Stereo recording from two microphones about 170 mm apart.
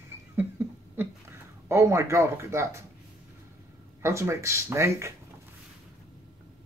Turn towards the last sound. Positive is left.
turn(degrees=-15)  # may be behind; listen again after turning